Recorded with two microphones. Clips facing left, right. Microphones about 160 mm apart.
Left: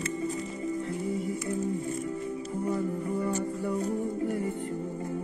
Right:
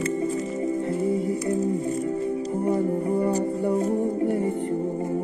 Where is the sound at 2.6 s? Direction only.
55° right (ahead or behind).